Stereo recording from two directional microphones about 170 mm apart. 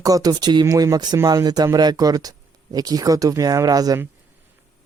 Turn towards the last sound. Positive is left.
turn(degrees=-20)  # may be behind; listen again after turning